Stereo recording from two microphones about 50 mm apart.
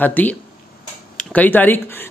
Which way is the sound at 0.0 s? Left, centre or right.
Left.